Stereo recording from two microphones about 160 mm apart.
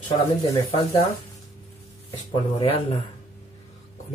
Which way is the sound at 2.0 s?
35° left (ahead or behind).